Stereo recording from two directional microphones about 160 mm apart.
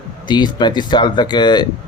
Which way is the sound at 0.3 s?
25° left (ahead or behind).